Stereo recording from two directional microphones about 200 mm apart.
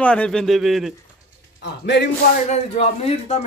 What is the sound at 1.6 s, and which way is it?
Speech, 55° left (ahead or behind).